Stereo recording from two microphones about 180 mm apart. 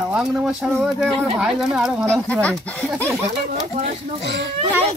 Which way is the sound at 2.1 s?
5° left (ahead or behind).